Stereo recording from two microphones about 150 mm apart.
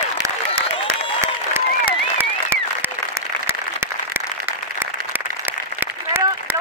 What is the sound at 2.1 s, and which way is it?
Applause, 15° right (ahead or behind).